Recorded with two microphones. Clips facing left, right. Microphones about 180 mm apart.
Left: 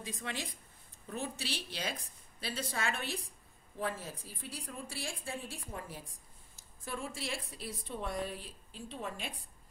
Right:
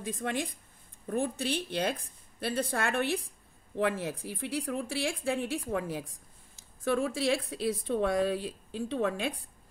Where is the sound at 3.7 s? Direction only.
75° right (ahead or behind); by 6.0 s 90° right.